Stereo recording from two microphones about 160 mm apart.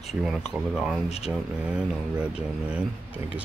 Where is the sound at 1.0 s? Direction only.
40° left (ahead or behind).